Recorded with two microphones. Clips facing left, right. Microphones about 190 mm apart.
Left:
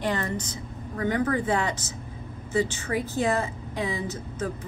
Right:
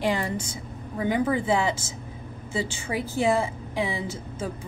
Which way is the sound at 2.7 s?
10° right (ahead or behind).